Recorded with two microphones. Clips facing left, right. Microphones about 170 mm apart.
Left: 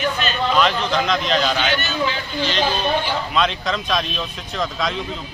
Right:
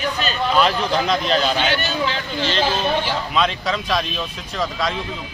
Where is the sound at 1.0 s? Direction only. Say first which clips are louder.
Right 1 dB; 35° right (ahead or behind).